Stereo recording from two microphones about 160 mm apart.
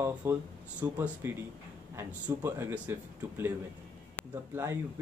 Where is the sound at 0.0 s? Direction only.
20° right (ahead or behind).